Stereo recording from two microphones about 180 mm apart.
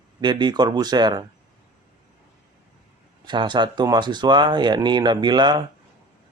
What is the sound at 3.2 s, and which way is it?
Speech, 25° right (ahead or behind).